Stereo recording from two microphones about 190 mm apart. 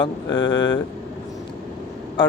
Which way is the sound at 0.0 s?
20° left (ahead or behind).